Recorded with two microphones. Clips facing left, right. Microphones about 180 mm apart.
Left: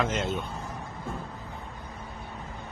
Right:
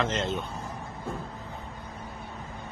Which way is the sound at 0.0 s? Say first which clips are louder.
Even; 10° left (ahead or behind).